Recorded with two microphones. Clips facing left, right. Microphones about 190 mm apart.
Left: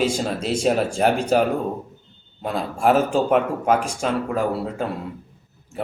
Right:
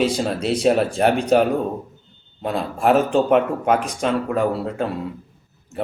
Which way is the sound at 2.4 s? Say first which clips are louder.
Right 1 dB; centre (ahead or behind).